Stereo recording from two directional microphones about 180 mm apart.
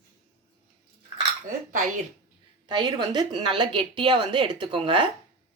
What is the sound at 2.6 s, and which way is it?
Speech, 25° right (ahead or behind).